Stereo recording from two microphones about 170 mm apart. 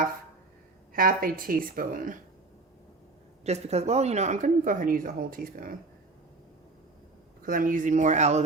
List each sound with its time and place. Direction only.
0.9 s speech: 55° right (ahead or behind)
3.4 s speech: 40° right (ahead or behind); by 5.7 s 55° right (ahead or behind)
7.4 s speech: 55° right (ahead or behind)